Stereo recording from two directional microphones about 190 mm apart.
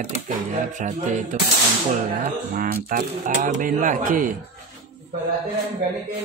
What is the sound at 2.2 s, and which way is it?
Speech, 45° right (ahead or behind).